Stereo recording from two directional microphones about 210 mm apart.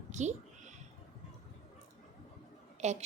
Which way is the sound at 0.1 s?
35° right (ahead or behind).